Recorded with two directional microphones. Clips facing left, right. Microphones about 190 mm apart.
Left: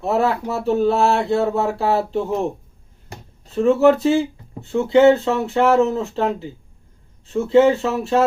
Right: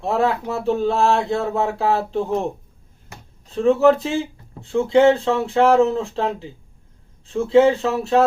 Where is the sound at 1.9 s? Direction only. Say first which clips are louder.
Left 1 dB; centre (ahead or behind).